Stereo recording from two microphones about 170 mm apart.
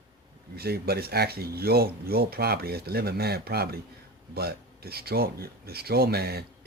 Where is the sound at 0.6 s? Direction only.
65° right (ahead or behind).